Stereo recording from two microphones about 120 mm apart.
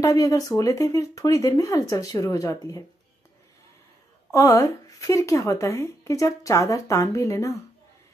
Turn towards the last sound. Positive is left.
turn(degrees=25)  # may be behind; listen again after turning